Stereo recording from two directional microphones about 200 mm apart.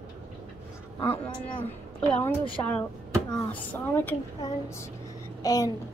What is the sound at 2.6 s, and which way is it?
A woman's voice, 20° left (ahead or behind).